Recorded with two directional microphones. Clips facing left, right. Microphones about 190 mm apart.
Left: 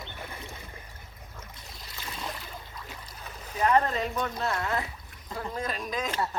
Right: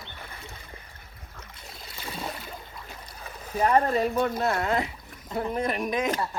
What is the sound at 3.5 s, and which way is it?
Speech, 45° right (ahead or behind).